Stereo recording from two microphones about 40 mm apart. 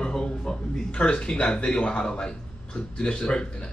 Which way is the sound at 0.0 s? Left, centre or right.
Left.